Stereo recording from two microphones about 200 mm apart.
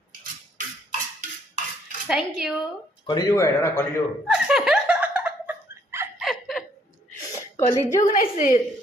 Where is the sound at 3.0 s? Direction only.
20° left (ahead or behind).